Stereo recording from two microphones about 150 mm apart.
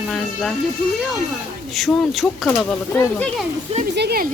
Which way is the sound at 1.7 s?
Centre (ahead or behind).